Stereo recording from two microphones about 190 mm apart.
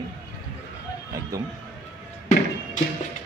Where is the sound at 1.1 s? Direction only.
15° right (ahead or behind).